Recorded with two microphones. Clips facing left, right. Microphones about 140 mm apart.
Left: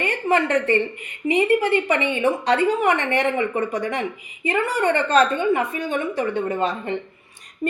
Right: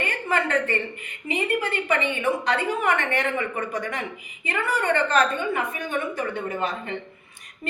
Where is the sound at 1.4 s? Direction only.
30° left (ahead or behind).